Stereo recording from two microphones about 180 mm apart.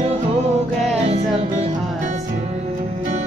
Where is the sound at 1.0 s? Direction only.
35° right (ahead or behind).